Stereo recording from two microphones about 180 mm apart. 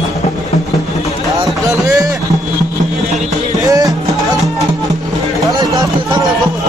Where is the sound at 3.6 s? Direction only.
20° right (ahead or behind).